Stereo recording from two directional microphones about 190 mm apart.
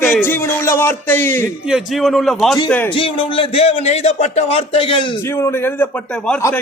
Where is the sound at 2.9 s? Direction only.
30° left (ahead or behind).